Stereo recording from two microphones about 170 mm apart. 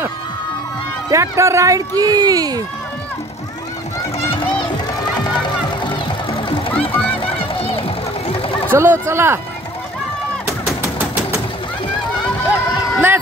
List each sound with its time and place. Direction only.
1.1 s speech: 20° right (ahead or behind)
5.9 s music: 30° left (ahead or behind)
6.9 s music: 10° left (ahead or behind)
7.2 s music: 35° left (ahead or behind)
8.3 s a sound: 35° left (ahead or behind)
8.7 s speech: 15° right (ahead or behind)
12.9 s vehicle: 10° right (ahead or behind)